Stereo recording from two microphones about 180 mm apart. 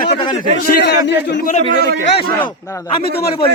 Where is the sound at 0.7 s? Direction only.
65° left (ahead or behind).